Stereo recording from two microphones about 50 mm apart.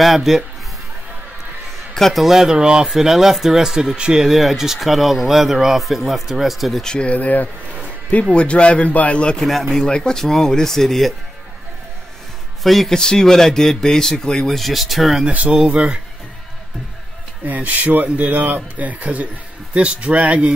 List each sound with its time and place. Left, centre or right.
0.0 s speech: centre
2.0 s a man's voice: centre
2.2 s speech: centre
2.9 s speech: centre
4.3 s speech: centre
6.8 s speech: centre
7.1 s speech: left
9.5 s speech: centre
9.8 s speech: centre
12.6 s speech: centre
12.9 s speech: centre
15.2 s speech: right
17.5 s speech: right